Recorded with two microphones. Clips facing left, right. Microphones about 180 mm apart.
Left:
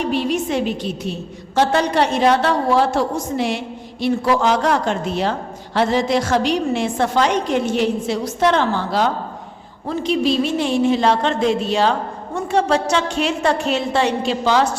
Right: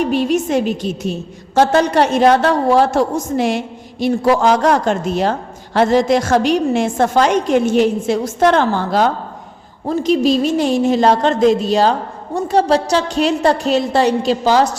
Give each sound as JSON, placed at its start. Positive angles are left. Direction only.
{"t": 0.1, "sound": "a woman's voice", "side_deg": -45}